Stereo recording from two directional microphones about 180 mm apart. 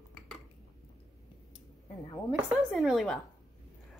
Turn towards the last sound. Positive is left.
turn(degrees=0)  # may be behind; listen again after turning